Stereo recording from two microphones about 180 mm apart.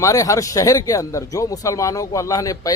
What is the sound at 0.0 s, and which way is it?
A man's voice, 15° left (ahead or behind).